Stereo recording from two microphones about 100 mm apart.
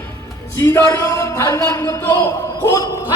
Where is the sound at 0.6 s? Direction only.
25° left (ahead or behind).